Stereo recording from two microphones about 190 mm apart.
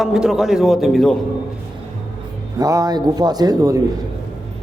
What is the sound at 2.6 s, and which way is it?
A man's voice, 20° right (ahead or behind).